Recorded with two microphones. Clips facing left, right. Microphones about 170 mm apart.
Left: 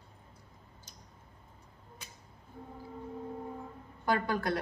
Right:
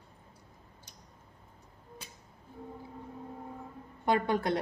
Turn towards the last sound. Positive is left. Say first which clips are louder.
# right 2 dB
turn(degrees=-25)  # may be behind; listen again after turning